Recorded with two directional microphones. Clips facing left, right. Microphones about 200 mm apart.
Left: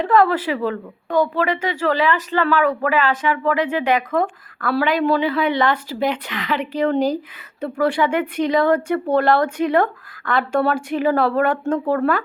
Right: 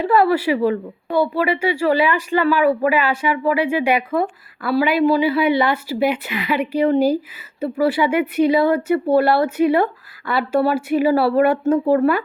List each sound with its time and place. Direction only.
0.0 s a woman's voice: 10° right (ahead or behind)